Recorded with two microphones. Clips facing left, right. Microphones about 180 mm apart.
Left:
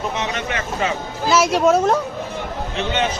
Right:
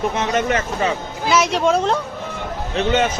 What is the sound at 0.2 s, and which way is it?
Speech, 45° right (ahead or behind).